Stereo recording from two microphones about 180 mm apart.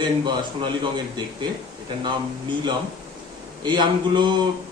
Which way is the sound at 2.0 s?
25° right (ahead or behind).